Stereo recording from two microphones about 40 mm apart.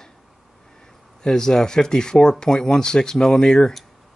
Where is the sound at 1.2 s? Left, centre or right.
Centre.